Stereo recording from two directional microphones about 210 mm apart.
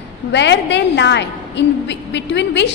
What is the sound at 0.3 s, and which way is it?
A woman's voice, 55° left (ahead or behind).